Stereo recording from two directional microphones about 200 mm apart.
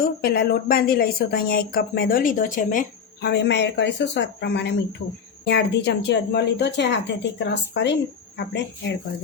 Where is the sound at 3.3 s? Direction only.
60° left (ahead or behind).